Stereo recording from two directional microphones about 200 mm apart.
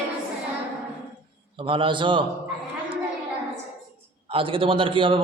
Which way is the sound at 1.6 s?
25° right (ahead or behind).